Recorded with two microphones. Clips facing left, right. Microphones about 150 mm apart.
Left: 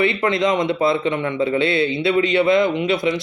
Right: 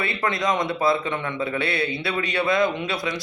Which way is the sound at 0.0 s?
20° left (ahead or behind).